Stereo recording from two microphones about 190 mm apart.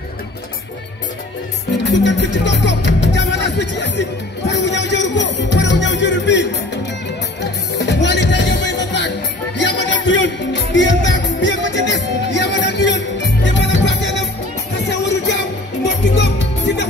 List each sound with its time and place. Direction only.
1.9 s music: 70° left (ahead or behind)
7.8 s music: 65° left (ahead or behind)
16.7 s music: 70° left (ahead or behind)